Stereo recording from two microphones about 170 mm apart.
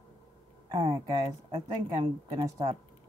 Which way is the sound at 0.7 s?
30° right (ahead or behind).